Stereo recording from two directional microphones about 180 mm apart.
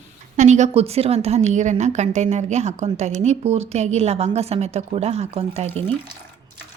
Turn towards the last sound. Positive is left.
turn(degrees=-35)  # may be behind; listen again after turning